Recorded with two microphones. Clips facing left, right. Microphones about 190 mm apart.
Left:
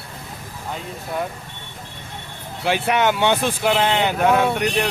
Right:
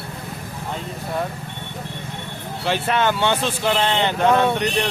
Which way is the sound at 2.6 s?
10° left (ahead or behind).